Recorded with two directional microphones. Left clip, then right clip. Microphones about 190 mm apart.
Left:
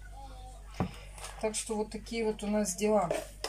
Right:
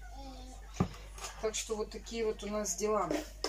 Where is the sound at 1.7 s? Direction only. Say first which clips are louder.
Left 3 dB; 15° left (ahead or behind).